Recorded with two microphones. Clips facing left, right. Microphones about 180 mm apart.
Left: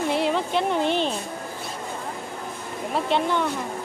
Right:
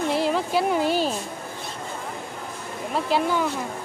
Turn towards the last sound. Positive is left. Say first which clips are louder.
# even
turn(degrees=-5)  # may be behind; listen again after turning